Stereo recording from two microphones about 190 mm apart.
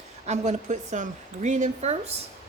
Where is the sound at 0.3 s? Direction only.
40° right (ahead or behind).